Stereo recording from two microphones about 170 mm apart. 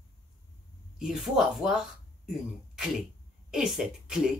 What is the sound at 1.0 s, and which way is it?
Speech, 5° right (ahead or behind).